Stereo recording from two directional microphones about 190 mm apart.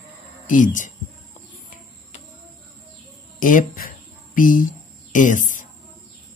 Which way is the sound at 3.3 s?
45° left (ahead or behind).